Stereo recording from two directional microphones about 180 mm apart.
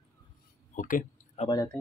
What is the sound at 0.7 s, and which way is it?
Speech, 45° left (ahead or behind).